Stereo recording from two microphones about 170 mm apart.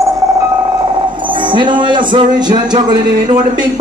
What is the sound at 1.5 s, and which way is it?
Music, 30° right (ahead or behind).